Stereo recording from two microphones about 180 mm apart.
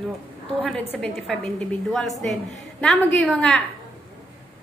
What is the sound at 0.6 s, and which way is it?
A woman's voice, 5° left (ahead or behind).